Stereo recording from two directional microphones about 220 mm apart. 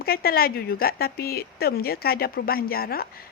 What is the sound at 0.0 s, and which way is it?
A woman's voice, 45° left (ahead or behind).